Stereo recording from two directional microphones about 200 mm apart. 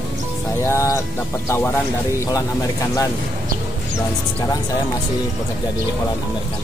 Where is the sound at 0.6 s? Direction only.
15° left (ahead or behind).